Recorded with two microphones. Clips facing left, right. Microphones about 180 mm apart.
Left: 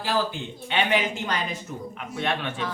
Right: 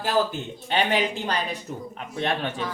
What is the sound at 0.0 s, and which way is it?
Speech, 40° right (ahead or behind).